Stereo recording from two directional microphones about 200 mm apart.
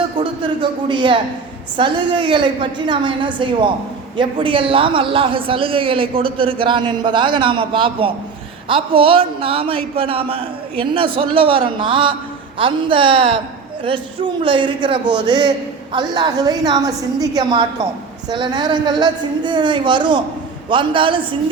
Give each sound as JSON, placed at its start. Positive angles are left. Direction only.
{"t": 0.2, "sound": "a sound", "side_deg": -25}
{"t": 1.7, "sound": "a man's voice", "side_deg": -25}
{"t": 14.4, "sound": "a man's voice", "side_deg": -25}